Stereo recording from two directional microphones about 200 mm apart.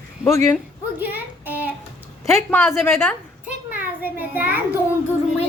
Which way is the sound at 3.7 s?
10° right (ahead or behind).